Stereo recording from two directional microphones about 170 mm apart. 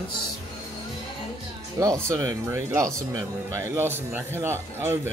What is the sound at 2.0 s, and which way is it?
Speech, 15° right (ahead or behind).